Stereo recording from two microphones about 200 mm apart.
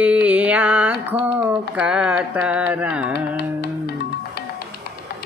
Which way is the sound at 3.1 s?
55° left (ahead or behind).